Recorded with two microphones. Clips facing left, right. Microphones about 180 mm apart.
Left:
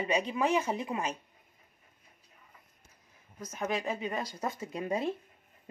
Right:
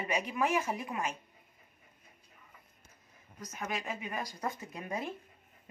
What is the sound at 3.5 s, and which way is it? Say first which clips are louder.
Speech: left 5 dB; 30° left (ahead or behind).